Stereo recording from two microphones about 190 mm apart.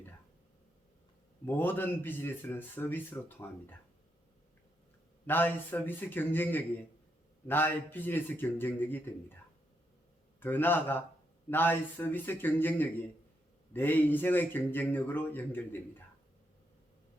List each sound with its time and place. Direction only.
1.5 s speech: 10° left (ahead or behind)
5.2 s speech: 10° left (ahead or behind)
10.4 s speech: 10° left (ahead or behind)